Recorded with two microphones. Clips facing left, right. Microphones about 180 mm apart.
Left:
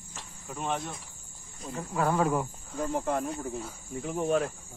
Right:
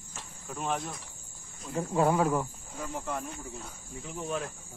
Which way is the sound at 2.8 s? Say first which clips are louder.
Left 6 dB; 50° left (ahead or behind).